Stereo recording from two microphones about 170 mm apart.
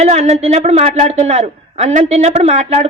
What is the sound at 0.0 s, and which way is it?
A man's voice, 40° right (ahead or behind).